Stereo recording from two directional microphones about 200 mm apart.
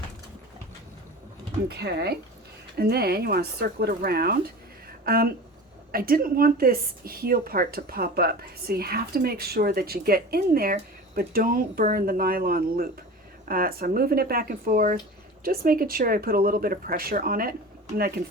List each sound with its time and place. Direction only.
1.6 s speech: 55° right (ahead or behind)